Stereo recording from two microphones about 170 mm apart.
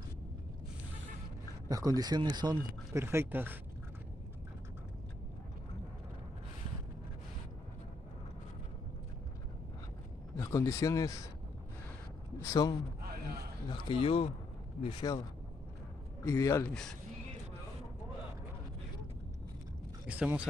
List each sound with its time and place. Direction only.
1.7 s speech: 20° right (ahead or behind)
10.3 s speech: 20° left (ahead or behind)
12.4 s a man's voice: 20° left (ahead or behind)
16.6 s speech: 5° left (ahead or behind)
20.1 s speech: 10° right (ahead or behind)